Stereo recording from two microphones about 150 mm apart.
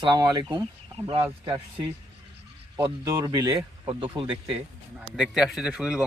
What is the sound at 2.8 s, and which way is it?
Speech, 20° right (ahead or behind).